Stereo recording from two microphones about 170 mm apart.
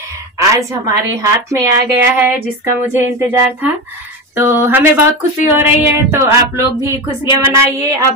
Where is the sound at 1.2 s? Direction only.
20° right (ahead or behind).